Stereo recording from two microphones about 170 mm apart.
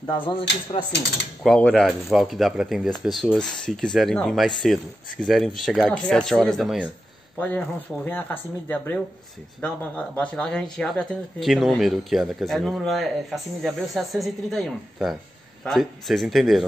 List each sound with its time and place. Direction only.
0.3 s speech: 30° left (ahead or behind)
1.4 s speech: 5° left (ahead or behind)